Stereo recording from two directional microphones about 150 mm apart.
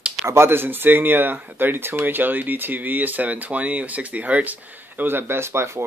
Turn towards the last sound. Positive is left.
turn(degrees=-15)  # may be behind; listen again after turning